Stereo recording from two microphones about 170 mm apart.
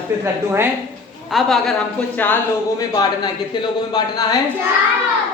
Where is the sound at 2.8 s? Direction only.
25° left (ahead or behind).